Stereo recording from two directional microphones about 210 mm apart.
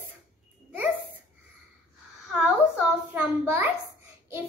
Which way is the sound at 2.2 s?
Centre (ahead or behind).